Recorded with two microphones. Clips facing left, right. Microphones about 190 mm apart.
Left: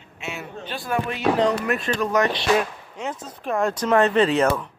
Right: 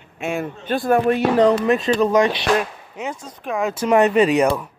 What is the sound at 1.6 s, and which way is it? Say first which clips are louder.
Speech: right 7 dB; 25° right (ahead or behind).